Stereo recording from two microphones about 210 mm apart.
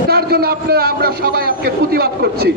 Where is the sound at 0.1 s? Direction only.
50° right (ahead or behind).